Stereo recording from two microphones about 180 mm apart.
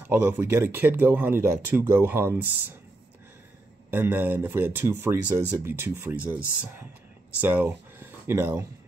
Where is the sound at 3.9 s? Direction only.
10° right (ahead or behind).